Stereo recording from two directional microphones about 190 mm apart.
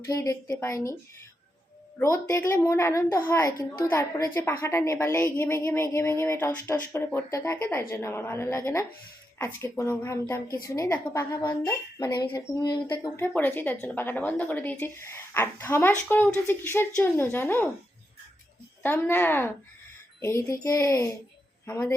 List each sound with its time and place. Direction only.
0.0 s speech: 15° left (ahead or behind)
2.0 s speech: 15° left (ahead or behind)
18.8 s speech: 10° left (ahead or behind)